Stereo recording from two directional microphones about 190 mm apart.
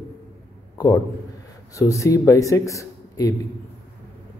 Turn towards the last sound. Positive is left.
turn(degrees=15)  # may be behind; listen again after turning